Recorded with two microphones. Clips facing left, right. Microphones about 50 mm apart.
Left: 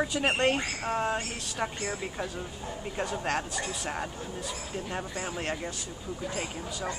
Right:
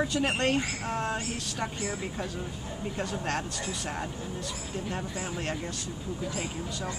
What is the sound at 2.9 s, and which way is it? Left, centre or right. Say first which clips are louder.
Speech: left 2 dB; centre.